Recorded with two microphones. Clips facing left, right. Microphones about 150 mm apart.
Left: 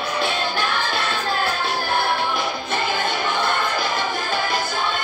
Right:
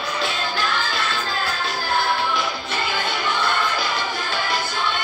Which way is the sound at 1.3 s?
55° left (ahead or behind).